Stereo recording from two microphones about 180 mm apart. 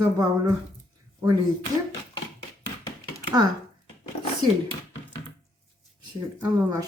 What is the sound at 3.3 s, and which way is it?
Speech, 20° right (ahead or behind).